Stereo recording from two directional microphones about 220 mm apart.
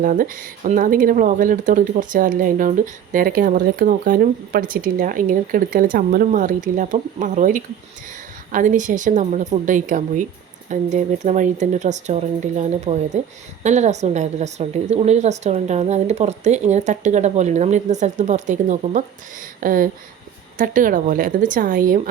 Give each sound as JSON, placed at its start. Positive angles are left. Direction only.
{"t": 0.0, "sound": "speech", "side_deg": -35}